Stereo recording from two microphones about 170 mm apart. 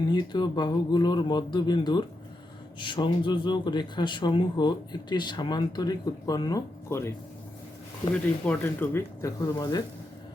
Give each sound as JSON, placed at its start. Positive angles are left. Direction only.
{"t": 0.1, "sound": "a man's voice", "side_deg": 25}
{"t": 8.1, "sound": "speech", "side_deg": 10}